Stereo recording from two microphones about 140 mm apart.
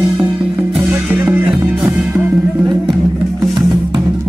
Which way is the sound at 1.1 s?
15° right (ahead or behind).